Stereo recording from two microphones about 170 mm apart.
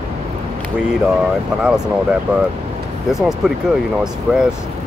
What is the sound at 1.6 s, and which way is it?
Speech, 5° right (ahead or behind).